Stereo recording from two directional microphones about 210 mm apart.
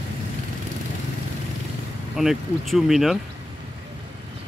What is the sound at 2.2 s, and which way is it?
A man's voice, centre (ahead or behind).